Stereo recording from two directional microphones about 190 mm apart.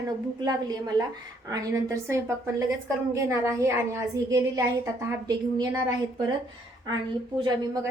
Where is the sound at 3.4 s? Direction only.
15° right (ahead or behind).